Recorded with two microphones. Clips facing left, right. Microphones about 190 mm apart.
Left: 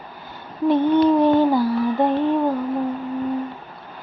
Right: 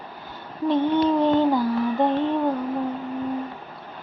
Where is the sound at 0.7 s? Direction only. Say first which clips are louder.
Left 4 dB; 10° left (ahead or behind).